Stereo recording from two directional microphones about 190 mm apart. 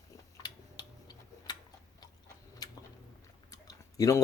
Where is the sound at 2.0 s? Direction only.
20° left (ahead or behind).